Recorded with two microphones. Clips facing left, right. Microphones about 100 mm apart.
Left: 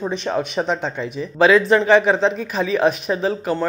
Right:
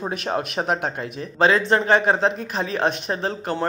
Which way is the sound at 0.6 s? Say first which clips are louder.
Left 1 dB; 55° right (ahead or behind).